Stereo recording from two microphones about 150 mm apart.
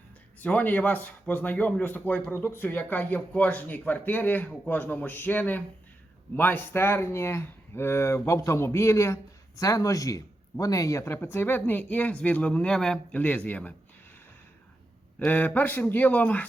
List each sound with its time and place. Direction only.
0.3 s a man's voice: 10° left (ahead or behind)
15.2 s a man's voice: 10° left (ahead or behind)